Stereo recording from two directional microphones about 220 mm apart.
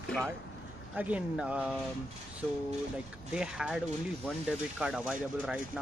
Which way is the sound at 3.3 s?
5° right (ahead or behind).